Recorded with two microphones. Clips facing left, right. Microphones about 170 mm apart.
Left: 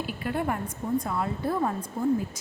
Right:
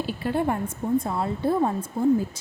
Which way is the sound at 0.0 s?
30° right (ahead or behind).